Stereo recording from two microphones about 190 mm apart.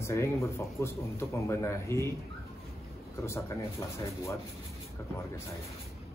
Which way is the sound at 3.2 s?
15° left (ahead or behind).